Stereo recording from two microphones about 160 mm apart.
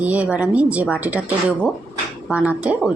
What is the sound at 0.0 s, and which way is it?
Speech, 10° right (ahead or behind).